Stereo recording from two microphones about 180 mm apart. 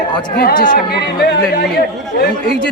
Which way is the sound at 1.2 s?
60° left (ahead or behind).